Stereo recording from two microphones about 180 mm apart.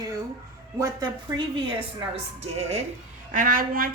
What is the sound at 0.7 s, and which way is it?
A woman's voice, 20° right (ahead or behind).